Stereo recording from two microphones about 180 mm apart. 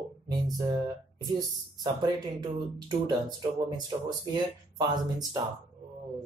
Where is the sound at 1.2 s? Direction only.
20° right (ahead or behind).